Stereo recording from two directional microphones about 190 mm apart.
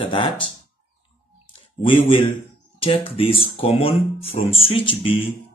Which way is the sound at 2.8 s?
30° left (ahead or behind).